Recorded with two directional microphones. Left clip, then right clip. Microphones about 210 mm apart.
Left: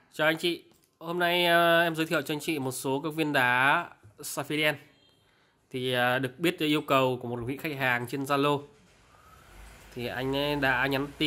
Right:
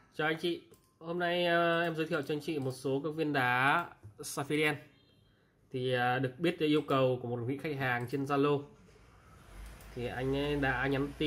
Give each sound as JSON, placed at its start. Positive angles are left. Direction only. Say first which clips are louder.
{"t": 0.1, "sound": "speech", "louder": "left 7 dB", "side_deg": 25}
{"t": 9.9, "sound": "speech", "louder": "left 4 dB", "side_deg": 25}